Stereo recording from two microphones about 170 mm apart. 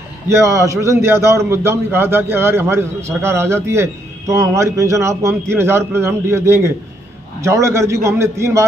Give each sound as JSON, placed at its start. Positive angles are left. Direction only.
{"t": 0.3, "sound": "a man's voice", "side_deg": -15}